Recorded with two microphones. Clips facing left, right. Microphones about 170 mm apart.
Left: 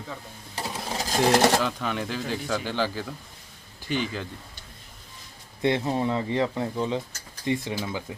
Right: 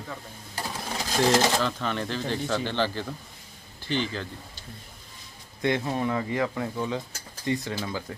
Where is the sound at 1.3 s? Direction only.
65° left (ahead or behind).